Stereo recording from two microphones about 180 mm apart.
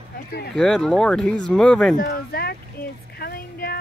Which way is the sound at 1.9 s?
55° left (ahead or behind).